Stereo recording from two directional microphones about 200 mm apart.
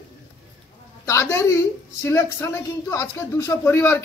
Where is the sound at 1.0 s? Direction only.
15° left (ahead or behind).